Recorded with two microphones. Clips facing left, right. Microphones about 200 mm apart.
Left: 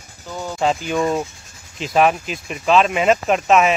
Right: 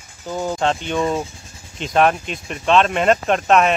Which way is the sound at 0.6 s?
5° left (ahead or behind).